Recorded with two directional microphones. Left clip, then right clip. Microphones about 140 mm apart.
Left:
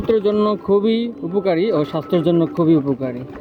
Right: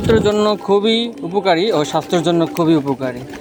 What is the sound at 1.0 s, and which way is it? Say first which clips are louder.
Speech: right 3 dB; 10° left (ahead or behind).